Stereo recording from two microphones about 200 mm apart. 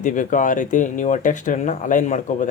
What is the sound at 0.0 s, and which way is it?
A man's voice, 40° left (ahead or behind).